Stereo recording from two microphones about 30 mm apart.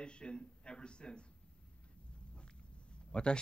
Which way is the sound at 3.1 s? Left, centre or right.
Left.